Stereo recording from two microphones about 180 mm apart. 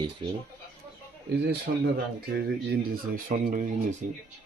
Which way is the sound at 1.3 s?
70° right (ahead or behind).